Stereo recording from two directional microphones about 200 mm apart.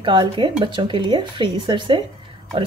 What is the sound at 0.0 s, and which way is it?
Speech, 25° right (ahead or behind).